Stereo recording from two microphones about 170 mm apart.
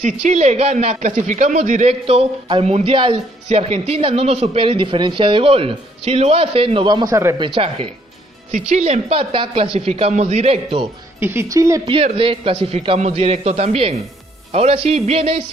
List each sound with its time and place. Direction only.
0.2 s a man's voice: 40° right (ahead or behind); by 7.4 s 20° right (ahead or behind)
7.4 s a man's voice: 30° right (ahead or behind)
8.5 s a man's voice: 45° right (ahead or behind)
11.1 s speech: 15° right (ahead or behind)
11.8 s a man's voice: 35° right (ahead or behind)